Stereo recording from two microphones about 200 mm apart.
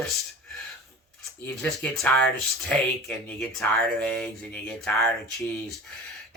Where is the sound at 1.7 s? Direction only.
5° left (ahead or behind).